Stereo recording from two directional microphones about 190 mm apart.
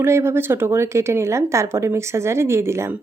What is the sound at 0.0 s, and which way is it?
A woman's voice, 15° right (ahead or behind).